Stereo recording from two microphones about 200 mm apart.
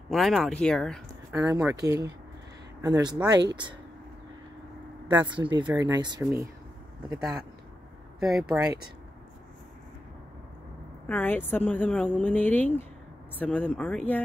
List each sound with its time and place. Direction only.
0.1 s speech: centre (ahead or behind)
1.3 s speech: 15° right (ahead or behind)
5.1 s speech: 10° right (ahead or behind)
5.4 s speech: 25° right (ahead or behind)
7.1 s speech: 5° right (ahead or behind)
11.1 s speech: 10° left (ahead or behind)